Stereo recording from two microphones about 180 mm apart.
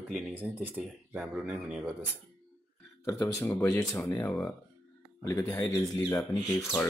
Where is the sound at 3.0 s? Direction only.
15° left (ahead or behind).